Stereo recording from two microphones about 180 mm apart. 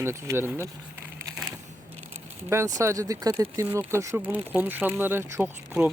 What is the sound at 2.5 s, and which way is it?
Speech, 15° right (ahead or behind).